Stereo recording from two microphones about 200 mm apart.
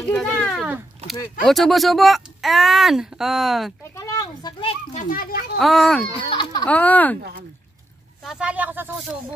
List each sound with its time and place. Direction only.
0.1 s speech: 5° left (ahead or behind)
3.9 s a child's voice: 15° left (ahead or behind)
5.0 s a child's voice: 45° left (ahead or behind)
5.6 s speech: centre (ahead or behind)
6.2 s speech: 20° left (ahead or behind)
6.6 s speech: 5° left (ahead or behind)
8.2 s speech: 5° right (ahead or behind)